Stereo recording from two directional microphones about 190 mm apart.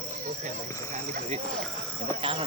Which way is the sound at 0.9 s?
40° right (ahead or behind).